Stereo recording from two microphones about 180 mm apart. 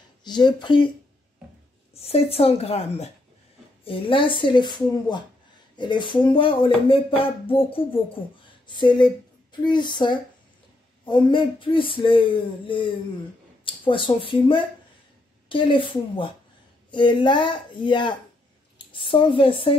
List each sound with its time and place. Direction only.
0.2 s speech: 25° left (ahead or behind)
2.0 s a woman's voice: 35° left (ahead or behind)